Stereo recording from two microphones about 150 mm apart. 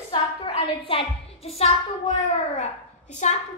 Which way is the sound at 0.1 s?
35° left (ahead or behind).